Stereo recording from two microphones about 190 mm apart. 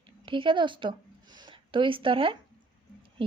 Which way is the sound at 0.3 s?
25° right (ahead or behind).